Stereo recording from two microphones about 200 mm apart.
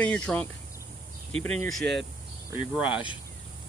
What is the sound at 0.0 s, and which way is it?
Speech, 5° left (ahead or behind).